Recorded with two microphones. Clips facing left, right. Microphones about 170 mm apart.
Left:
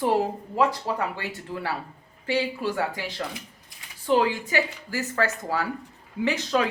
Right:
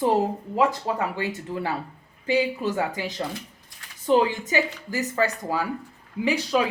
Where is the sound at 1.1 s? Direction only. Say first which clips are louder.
Right 4 dB; 20° right (ahead or behind).